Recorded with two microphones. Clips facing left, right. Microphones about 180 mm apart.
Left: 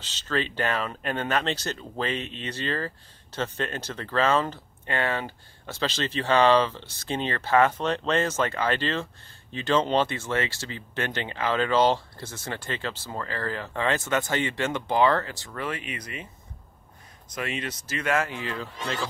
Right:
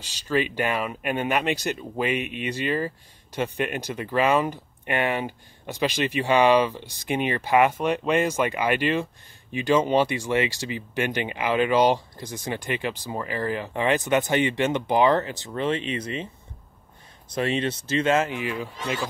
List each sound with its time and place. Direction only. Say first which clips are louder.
0.0 s speech: right 4 dB; 10° right (ahead or behind); by 16.3 s 25° right (ahead or behind)
17.3 s speech: right 7 dB; 30° right (ahead or behind); by 18.9 s 10° right (ahead or behind)